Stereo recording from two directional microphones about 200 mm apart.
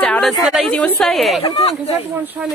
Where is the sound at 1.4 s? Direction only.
25° left (ahead or behind).